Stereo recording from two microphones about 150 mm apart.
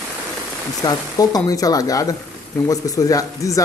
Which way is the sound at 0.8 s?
25° left (ahead or behind).